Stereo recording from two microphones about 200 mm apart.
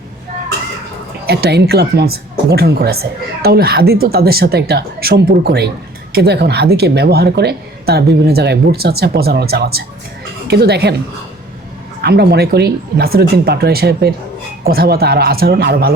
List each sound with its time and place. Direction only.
1.3 s a woman's voice: 55° right (ahead or behind)
12.0 s a woman's voice: 55° right (ahead or behind)